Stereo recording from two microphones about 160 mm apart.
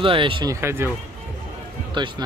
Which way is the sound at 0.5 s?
15° right (ahead or behind).